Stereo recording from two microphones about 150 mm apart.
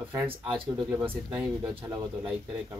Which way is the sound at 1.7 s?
30° right (ahead or behind).